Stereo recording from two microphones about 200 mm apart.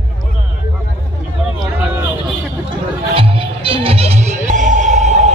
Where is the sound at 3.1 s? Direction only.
30° right (ahead or behind).